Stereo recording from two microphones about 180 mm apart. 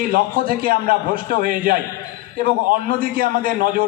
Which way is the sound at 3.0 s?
50° right (ahead or behind).